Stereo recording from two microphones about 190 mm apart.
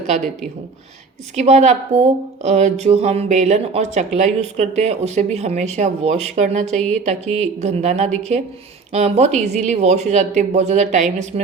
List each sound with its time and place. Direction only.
1.4 s speech: 35° right (ahead or behind)